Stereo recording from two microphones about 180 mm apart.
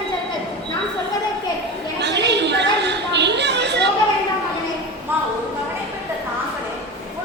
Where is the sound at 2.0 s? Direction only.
70° right (ahead or behind).